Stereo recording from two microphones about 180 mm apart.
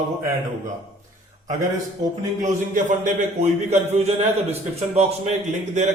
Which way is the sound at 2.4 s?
45° right (ahead or behind).